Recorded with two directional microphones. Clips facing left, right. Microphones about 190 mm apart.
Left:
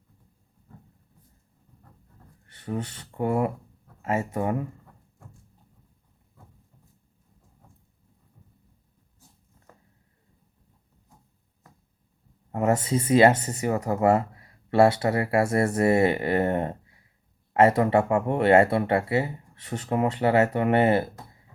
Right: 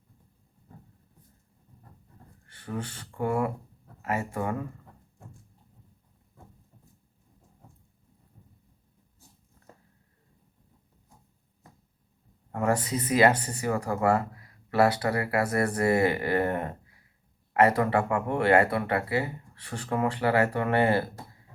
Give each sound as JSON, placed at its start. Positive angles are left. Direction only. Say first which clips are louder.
{"t": 2.5, "sound": "speech", "louder": "left 4 dB", "side_deg": 25}
{"t": 12.5, "sound": "speech", "louder": "left 3 dB", "side_deg": 20}